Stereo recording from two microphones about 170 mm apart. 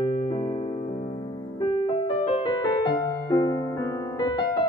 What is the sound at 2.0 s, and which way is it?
Music, 30° left (ahead or behind).